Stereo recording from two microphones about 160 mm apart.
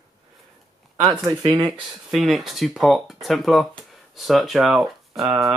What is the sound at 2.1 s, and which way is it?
Speech, centre (ahead or behind).